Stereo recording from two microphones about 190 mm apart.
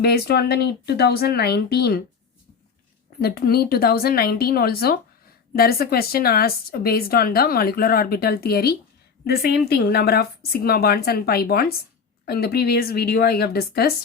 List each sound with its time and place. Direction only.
0.0 s speech: 55° left (ahead or behind)
3.2 s a woman's voice: 55° left (ahead or behind)